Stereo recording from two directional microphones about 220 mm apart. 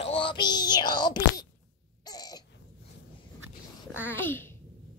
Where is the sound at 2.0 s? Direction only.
15° left (ahead or behind).